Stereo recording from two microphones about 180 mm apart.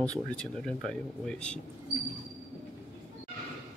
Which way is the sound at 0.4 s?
5° left (ahead or behind).